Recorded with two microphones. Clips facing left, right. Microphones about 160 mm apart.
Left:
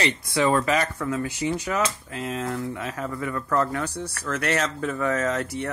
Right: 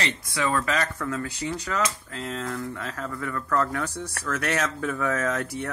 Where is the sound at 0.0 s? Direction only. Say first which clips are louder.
Left 5 dB; 25° left (ahead or behind).